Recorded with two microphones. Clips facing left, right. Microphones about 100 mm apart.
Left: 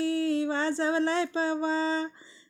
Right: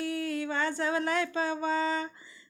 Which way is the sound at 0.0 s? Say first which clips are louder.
Left 6 dB; 30° left (ahead or behind).